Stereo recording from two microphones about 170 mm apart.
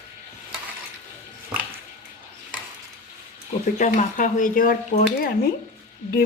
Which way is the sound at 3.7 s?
50° left (ahead or behind).